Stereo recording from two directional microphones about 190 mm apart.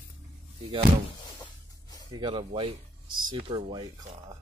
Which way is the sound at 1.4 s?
20° left (ahead or behind).